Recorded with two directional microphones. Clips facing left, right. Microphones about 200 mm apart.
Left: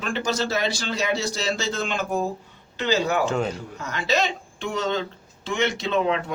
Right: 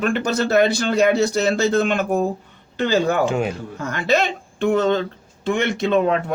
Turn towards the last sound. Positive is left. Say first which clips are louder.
# right 5 dB
turn(degrees=-50)  # may be behind; listen again after turning